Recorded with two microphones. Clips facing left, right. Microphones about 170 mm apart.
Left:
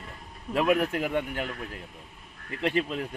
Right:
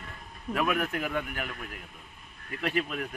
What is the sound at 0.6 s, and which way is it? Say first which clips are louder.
Speech: left 5 dB; 25° left (ahead or behind).